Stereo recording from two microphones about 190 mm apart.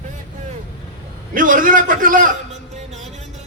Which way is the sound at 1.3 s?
45° right (ahead or behind).